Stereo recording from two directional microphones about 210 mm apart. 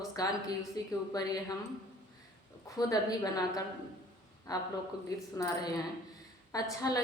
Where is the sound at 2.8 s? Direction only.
15° left (ahead or behind).